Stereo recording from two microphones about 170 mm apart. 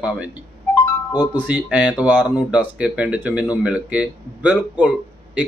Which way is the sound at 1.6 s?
5° right (ahead or behind).